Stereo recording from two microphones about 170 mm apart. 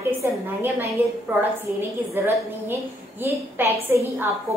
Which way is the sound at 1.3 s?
10° right (ahead or behind).